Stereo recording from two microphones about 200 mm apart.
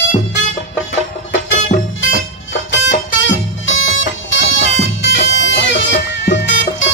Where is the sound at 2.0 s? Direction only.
70° left (ahead or behind).